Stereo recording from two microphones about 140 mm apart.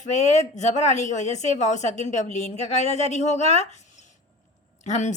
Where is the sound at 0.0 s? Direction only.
55° left (ahead or behind).